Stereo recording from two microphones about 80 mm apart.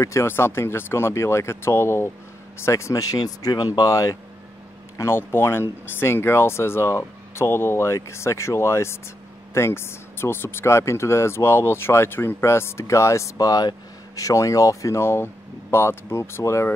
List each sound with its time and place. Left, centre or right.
0.0 s speech: left
4.9 s speech: left
13.5 s speech: left